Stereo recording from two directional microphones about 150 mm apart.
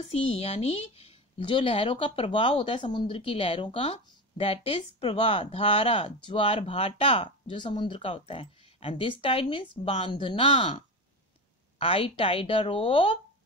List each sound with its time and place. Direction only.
0.1 s a woman's voice: 45° left (ahead or behind)
11.8 s a woman's voice: 40° left (ahead or behind)